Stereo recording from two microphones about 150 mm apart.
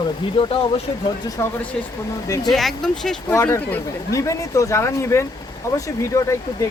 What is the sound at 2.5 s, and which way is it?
Speech, centre (ahead or behind).